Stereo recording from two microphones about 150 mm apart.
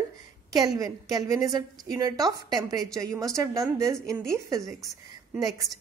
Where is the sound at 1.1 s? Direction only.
25° right (ahead or behind).